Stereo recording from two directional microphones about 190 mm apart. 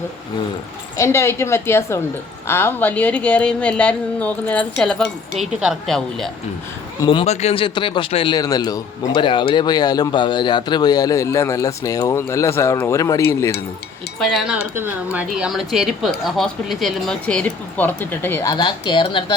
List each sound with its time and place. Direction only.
0.9 s a woman's voice: 15° left (ahead or behind)
7.0 s speech: 25° left (ahead or behind)
14.2 s a woman's voice: centre (ahead or behind)
18.5 s speech: 25° left (ahead or behind)